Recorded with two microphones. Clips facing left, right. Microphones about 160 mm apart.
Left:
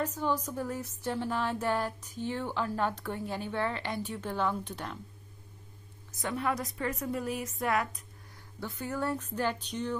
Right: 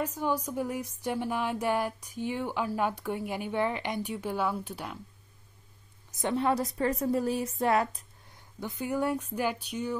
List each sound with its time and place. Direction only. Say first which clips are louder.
0.0 s music: right 1 dB; 10° right (ahead or behind)
6.1 s a woman's voice: right 5 dB; 25° right (ahead or behind)
8.5 s music: right 4 dB; 15° right (ahead or behind)